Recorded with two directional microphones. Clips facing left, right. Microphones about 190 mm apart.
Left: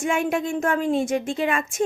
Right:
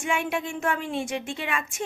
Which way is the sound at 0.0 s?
40° left (ahead or behind).